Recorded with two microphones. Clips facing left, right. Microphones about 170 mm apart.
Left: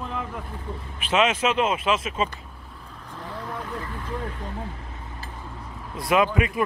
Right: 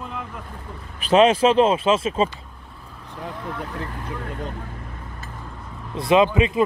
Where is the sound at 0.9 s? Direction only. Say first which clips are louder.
Right 7 dB; 35° right (ahead or behind).